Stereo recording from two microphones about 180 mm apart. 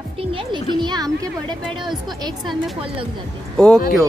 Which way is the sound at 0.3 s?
30° right (ahead or behind).